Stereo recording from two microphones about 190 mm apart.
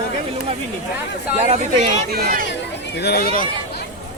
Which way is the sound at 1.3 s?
35° right (ahead or behind).